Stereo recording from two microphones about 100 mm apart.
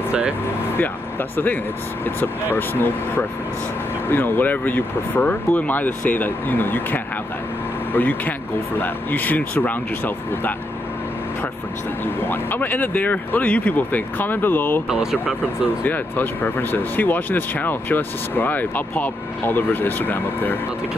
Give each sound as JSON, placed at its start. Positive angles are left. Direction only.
{"t": 1.3, "sound": "speech", "side_deg": 20}
{"t": 12.2, "sound": "speech", "side_deg": 20}
{"t": 14.9, "sound": "speech", "side_deg": -5}
{"t": 15.8, "sound": "speech", "side_deg": 20}